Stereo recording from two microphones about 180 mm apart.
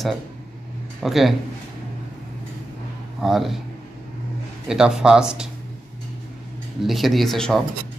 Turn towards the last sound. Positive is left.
turn(degrees=0)  # may be behind; listen again after turning